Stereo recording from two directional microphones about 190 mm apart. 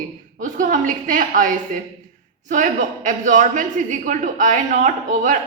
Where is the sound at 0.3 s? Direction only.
40° right (ahead or behind).